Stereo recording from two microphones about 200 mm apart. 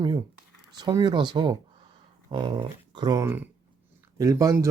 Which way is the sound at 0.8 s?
20° right (ahead or behind).